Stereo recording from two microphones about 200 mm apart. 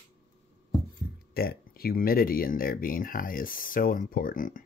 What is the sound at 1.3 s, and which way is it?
Speech, 50° left (ahead or behind).